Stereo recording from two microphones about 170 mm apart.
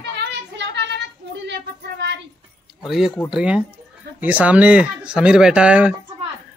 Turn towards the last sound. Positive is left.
turn(degrees=-5)  # may be behind; listen again after turning